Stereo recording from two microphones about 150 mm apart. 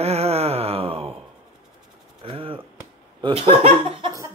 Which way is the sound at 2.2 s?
35° right (ahead or behind).